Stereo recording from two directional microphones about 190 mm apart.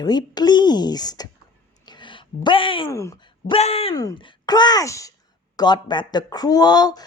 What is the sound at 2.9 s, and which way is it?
Speech, 15° left (ahead or behind).